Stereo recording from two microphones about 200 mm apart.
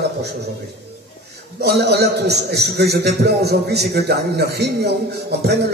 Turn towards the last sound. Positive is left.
turn(degrees=-55)  # may be behind; listen again after turning